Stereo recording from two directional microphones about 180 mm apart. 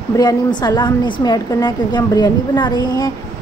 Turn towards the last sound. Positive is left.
turn(degrees=20)  # may be behind; listen again after turning